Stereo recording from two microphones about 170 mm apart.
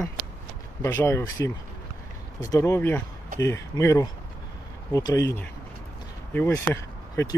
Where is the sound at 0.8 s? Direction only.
15° left (ahead or behind).